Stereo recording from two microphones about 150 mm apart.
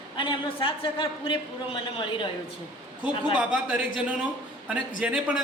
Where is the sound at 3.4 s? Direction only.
5° right (ahead or behind).